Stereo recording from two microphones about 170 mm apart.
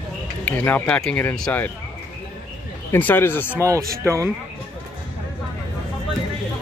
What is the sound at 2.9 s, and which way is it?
Speech, 10° left (ahead or behind).